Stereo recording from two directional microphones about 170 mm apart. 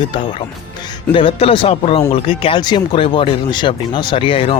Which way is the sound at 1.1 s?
30° left (ahead or behind).